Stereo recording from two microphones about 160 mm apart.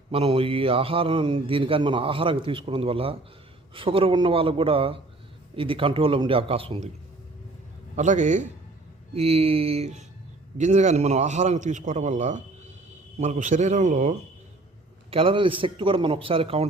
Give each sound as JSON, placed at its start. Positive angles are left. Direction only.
{"t": 0.1, "sound": "a man's voice", "side_deg": -35}
{"t": 7.9, "sound": "a man's voice", "side_deg": -50}
{"t": 9.1, "sound": "a man's voice", "side_deg": -40}
{"t": 15.1, "sound": "a man's voice", "side_deg": -35}